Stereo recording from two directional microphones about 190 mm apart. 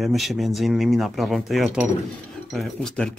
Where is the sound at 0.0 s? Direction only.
Centre (ahead or behind).